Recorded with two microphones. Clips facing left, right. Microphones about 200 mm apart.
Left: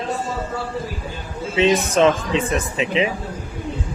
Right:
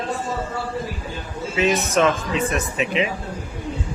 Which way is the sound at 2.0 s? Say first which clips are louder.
Left 3 dB; 30° left (ahead or behind).